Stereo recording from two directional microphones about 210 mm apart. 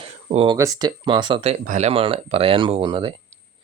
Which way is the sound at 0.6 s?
20° right (ahead or behind).